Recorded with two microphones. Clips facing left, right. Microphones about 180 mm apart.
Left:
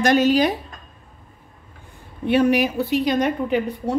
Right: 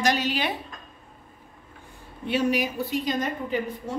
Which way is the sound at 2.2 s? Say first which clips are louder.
Left 7 dB; 60° left (ahead or behind).